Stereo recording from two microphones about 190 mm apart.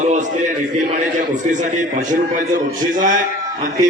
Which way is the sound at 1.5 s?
40° right (ahead or behind).